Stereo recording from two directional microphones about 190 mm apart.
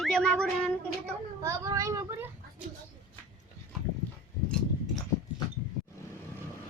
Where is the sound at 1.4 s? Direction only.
15° right (ahead or behind).